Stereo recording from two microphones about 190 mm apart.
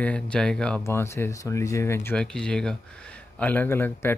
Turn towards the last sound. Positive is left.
turn(degrees=10)  # may be behind; listen again after turning